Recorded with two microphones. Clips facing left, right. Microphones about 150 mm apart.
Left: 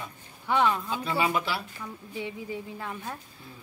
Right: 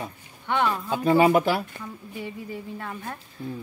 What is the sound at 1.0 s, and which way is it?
Speech, 45° right (ahead or behind).